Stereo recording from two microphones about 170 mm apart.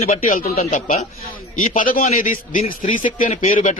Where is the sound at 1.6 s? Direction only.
55° left (ahead or behind).